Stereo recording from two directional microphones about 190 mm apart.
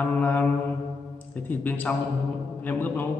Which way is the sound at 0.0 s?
10° left (ahead or behind).